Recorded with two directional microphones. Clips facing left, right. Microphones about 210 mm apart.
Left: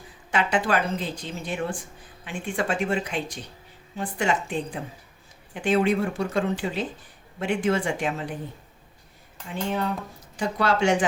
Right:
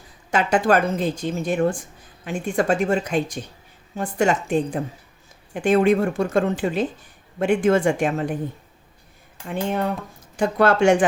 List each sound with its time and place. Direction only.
0.3 s speech: 45° right (ahead or behind)
9.5 s speech: 55° right (ahead or behind)